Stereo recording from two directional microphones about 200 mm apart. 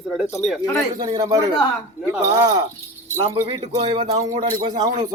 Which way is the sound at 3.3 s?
30° right (ahead or behind).